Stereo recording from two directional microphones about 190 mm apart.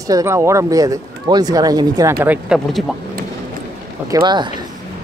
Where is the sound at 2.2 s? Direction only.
5° right (ahead or behind).